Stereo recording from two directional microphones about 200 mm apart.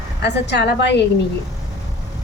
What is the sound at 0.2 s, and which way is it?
Speech, 60° left (ahead or behind).